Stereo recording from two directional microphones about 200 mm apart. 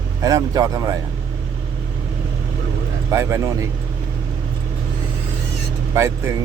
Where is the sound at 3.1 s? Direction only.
15° right (ahead or behind).